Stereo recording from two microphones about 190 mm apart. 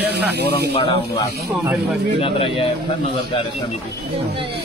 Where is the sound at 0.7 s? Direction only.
25° left (ahead or behind).